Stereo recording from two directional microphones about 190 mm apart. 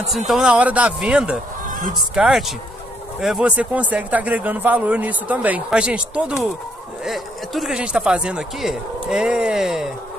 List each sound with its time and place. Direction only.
0.3 s a man's voice: 5° right (ahead or behind)